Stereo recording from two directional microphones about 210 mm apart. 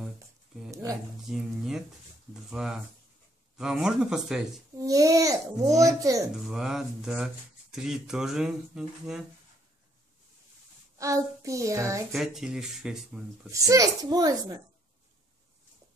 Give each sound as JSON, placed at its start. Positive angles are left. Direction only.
{"t": 0.7, "sound": "a sound", "side_deg": -15}
{"t": 1.2, "sound": "speech", "side_deg": 0}
{"t": 4.8, "sound": "a child's voice", "side_deg": -15}
{"t": 6.5, "sound": "speech", "side_deg": 0}
{"t": 11.0, "sound": "a child's voice", "side_deg": -15}
{"t": 12.1, "sound": "speech", "side_deg": 0}
{"t": 13.5, "sound": "a child's voice", "side_deg": -15}